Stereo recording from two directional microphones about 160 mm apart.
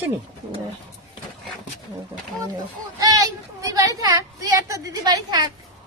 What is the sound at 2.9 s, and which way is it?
A woman's voice, 20° right (ahead or behind).